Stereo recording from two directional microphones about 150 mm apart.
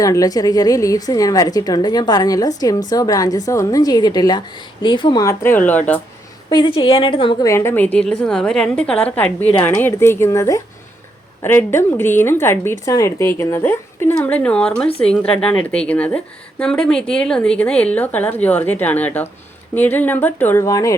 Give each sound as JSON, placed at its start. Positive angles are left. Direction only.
{"t": 0.0, "sound": "a woman's voice", "side_deg": 20}
{"t": 6.5, "sound": "a woman's voice", "side_deg": 30}
{"t": 7.4, "sound": "a woman's voice", "side_deg": 20}